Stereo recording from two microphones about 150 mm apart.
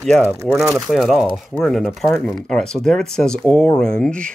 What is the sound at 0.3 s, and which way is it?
Speech, 15° right (ahead or behind).